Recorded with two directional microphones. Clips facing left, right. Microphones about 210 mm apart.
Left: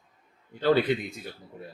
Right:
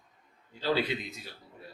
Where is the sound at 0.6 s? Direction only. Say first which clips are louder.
Left 7 dB; 55° left (ahead or behind).